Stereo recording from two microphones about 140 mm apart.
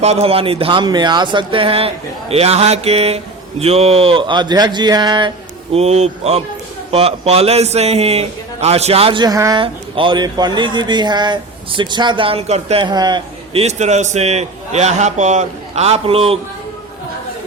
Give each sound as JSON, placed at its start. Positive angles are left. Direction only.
{"t": 0.0, "sound": "a man's voice", "side_deg": -45}
{"t": 5.7, "sound": "a man's voice", "side_deg": -50}
{"t": 9.2, "sound": "a woman's voice", "side_deg": -25}
{"t": 9.6, "sound": "speech", "side_deg": -40}
{"t": 12.8, "sound": "speech", "side_deg": -30}
{"t": 13.5, "sound": "a man's voice", "side_deg": -50}